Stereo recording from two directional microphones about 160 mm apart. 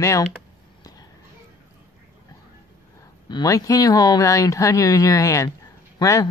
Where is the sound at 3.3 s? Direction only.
25° left (ahead or behind).